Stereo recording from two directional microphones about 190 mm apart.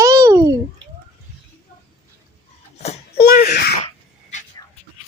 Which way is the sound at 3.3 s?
55° left (ahead or behind).